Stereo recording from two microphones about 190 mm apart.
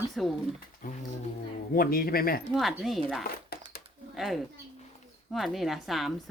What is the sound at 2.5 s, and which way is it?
A woman's voice, centre (ahead or behind).